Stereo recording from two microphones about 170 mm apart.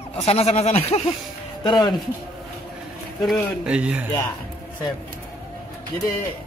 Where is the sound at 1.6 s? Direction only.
25° left (ahead or behind).